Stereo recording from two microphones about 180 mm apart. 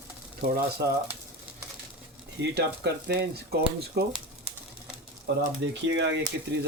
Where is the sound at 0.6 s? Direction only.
65° right (ahead or behind).